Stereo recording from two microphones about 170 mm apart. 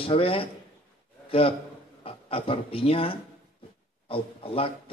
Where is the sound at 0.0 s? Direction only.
35° left (ahead or behind).